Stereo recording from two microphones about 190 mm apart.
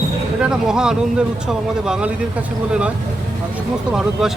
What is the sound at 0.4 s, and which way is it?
Speech, 5° right (ahead or behind).